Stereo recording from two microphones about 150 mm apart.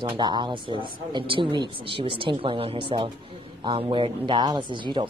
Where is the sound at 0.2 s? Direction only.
30° right (ahead or behind).